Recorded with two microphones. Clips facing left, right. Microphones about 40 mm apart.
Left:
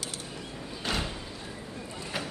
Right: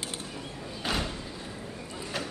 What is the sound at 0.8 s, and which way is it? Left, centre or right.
Slam, centre.